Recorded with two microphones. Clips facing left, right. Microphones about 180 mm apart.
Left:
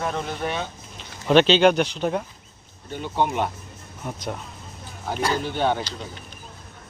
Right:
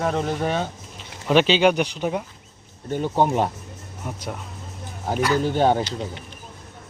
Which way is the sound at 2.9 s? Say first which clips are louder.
Right 4 dB; 40° right (ahead or behind).